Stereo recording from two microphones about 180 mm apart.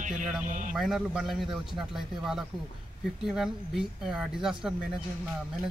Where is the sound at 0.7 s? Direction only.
Centre (ahead or behind).